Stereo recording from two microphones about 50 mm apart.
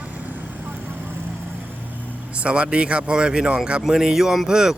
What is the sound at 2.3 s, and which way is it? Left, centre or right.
Speech, right.